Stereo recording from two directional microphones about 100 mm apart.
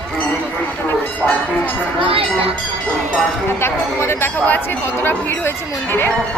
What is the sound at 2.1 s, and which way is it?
Speech, 70° right (ahead or behind).